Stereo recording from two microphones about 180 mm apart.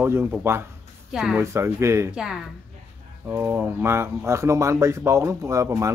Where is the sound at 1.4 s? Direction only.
15° right (ahead or behind).